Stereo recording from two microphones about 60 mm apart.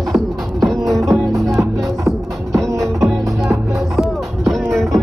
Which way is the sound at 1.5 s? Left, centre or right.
Right.